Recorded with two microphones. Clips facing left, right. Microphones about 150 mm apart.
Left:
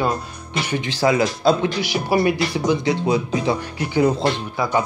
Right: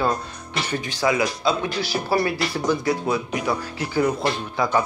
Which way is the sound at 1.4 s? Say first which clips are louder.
Left 5 dB; 40° left (ahead or behind).